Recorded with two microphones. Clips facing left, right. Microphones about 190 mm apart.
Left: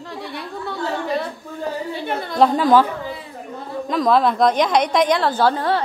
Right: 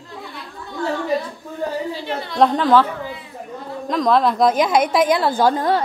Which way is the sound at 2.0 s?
55° left (ahead or behind).